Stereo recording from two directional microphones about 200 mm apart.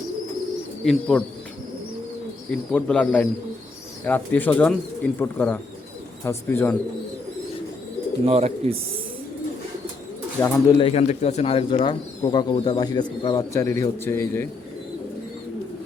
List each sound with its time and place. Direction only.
0.9 s speech: 5° left (ahead or behind)
2.7 s speech: 5° left (ahead or behind)
8.2 s speech: 30° right (ahead or behind)
10.4 s speech: 20° left (ahead or behind)